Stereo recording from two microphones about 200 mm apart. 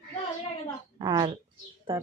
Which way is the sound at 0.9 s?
20° right (ahead or behind).